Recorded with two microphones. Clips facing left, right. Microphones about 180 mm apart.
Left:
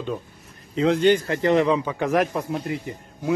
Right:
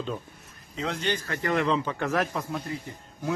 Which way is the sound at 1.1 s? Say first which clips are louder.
Left 8 dB; 25° left (ahead or behind).